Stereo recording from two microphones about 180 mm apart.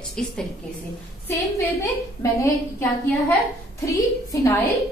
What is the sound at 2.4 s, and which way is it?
A woman's voice, 15° left (ahead or behind).